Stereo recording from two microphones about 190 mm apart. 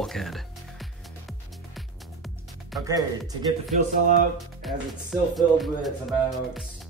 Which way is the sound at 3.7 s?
40° right (ahead or behind).